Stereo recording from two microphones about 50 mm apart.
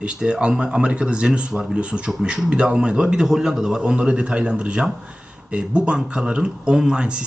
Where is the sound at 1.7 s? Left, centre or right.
Right.